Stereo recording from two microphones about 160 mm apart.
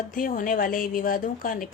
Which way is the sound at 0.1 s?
60° left (ahead or behind).